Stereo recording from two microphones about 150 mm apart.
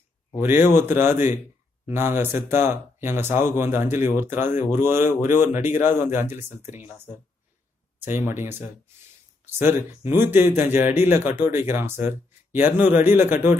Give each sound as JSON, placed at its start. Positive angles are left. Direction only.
{"t": 0.4, "sound": "speech", "side_deg": -15}
{"t": 8.0, "sound": "speech", "side_deg": -15}